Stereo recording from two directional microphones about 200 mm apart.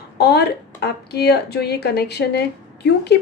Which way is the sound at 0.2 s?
55° left (ahead or behind).